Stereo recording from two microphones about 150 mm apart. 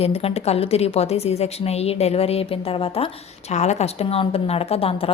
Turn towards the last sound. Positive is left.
turn(degrees=40)  # may be behind; listen again after turning